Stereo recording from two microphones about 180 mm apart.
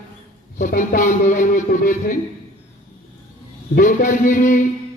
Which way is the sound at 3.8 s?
45° left (ahead or behind).